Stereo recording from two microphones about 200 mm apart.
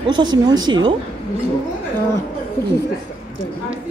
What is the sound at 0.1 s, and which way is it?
Speech, 20° right (ahead or behind).